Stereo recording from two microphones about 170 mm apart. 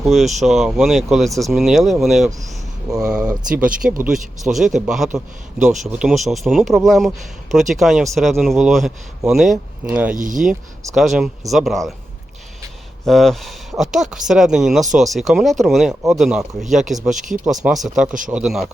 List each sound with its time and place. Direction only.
0.0 s a man's voice: centre (ahead or behind)
10.2 s speech: 50° right (ahead or behind)
10.9 s a man's voice: centre (ahead or behind)
13.1 s a man's voice: centre (ahead or behind)